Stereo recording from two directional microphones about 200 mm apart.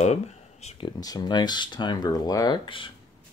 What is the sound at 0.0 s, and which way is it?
Speech, 35° left (ahead or behind).